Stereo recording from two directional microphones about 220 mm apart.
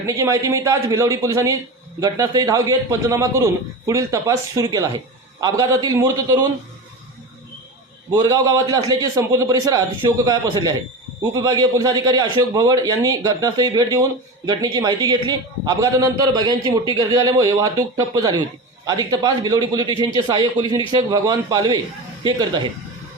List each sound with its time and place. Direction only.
0.1 s a man's voice: 15° right (ahead or behind)
8.1 s a man's voice: 15° right (ahead or behind)